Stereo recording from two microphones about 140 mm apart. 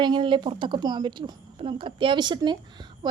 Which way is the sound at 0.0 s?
35° right (ahead or behind).